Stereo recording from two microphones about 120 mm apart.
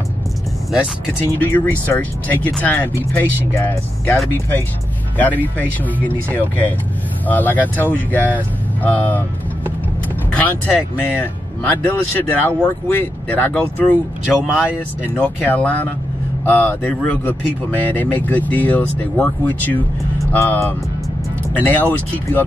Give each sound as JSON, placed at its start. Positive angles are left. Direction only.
{"t": 1.4, "sound": "speech", "side_deg": 15}
{"t": 10.3, "sound": "speech", "side_deg": 15}
{"t": 14.2, "sound": "speech", "side_deg": -5}
{"t": 15.1, "sound": "speech", "side_deg": 15}